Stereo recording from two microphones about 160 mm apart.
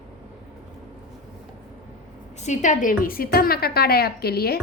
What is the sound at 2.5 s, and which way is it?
A woman's voice, 50° left (ahead or behind).